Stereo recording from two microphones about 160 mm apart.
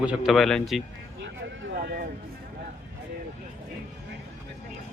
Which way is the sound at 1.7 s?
75° right (ahead or behind).